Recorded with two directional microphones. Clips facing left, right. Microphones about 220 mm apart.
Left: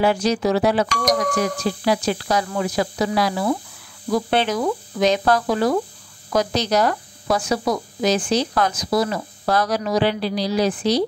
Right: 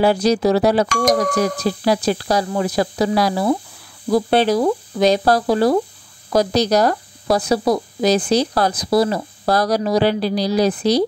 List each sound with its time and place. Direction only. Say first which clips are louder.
0.0 s speech: right 4 dB; 35° right (ahead or behind)